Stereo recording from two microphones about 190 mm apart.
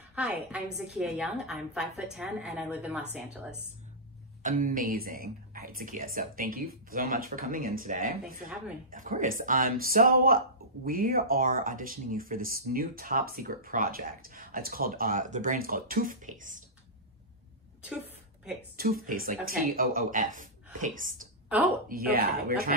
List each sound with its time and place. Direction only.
0.1 s a woman's voice: 5° right (ahead or behind)
4.4 s speech: 45° right (ahead or behind)
17.8 s a sound: 5° right (ahead or behind)
18.8 s speech: 50° right (ahead or behind)
21.5 s a woman's voice: 10° right (ahead or behind)
21.8 s speech: 50° right (ahead or behind)